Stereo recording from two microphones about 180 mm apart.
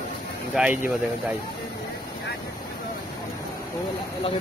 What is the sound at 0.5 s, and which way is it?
Speech, 5° right (ahead or behind).